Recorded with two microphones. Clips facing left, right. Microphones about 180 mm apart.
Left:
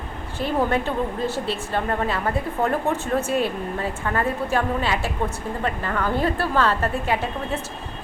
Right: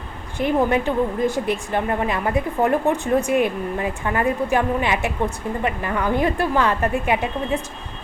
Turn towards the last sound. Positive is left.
turn(degrees=-15)  # may be behind; listen again after turning